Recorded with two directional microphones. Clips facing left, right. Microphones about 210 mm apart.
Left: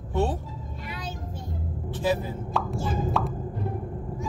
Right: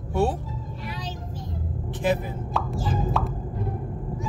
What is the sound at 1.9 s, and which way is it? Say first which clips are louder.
Speech: right 1 dB; 15° right (ahead or behind).